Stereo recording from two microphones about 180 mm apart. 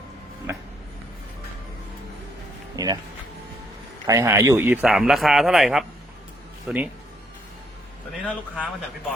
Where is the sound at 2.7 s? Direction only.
20° right (ahead or behind).